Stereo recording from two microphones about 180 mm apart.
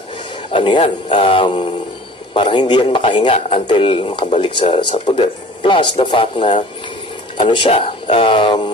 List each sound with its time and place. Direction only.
0.5 s speech: 25° left (ahead or behind)